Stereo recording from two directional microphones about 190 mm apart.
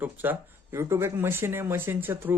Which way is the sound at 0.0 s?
10° right (ahead or behind).